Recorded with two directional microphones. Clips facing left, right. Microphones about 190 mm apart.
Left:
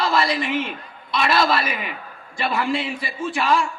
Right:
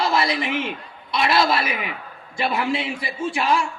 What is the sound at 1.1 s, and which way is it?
Speech, 20° right (ahead or behind).